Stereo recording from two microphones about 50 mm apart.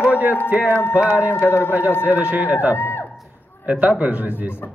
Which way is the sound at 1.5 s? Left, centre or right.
Left.